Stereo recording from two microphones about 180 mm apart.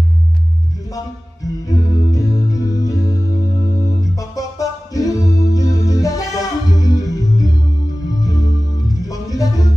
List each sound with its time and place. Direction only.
0.9 s music: 20° left (ahead or behind)